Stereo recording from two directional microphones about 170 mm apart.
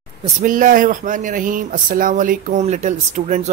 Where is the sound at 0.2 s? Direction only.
45° right (ahead or behind).